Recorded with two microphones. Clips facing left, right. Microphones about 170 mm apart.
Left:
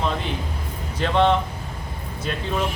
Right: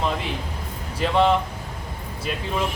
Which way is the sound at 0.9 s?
5° right (ahead or behind).